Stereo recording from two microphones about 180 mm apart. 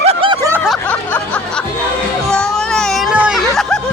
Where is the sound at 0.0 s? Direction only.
30° right (ahead or behind).